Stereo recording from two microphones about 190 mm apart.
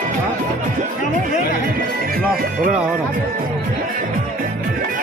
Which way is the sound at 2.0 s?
50° right (ahead or behind).